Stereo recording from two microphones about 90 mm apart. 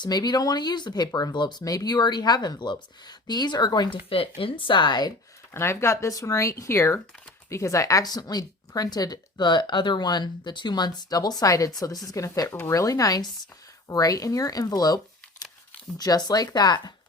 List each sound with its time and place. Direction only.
0.0 s a woman's voice: 50° left (ahead or behind)
3.9 s speech: 85° left; by 5.1 s 55° left (ahead or behind)
5.5 s a woman's voice: 30° left (ahead or behind); by 16.9 s 50° left (ahead or behind)